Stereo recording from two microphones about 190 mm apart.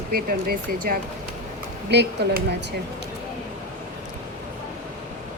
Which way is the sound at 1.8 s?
60° right (ahead or behind).